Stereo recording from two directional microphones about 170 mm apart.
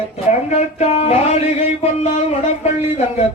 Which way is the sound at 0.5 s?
40° left (ahead or behind).